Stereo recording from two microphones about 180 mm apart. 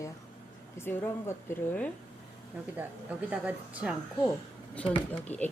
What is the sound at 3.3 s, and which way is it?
Speech, 5° right (ahead or behind).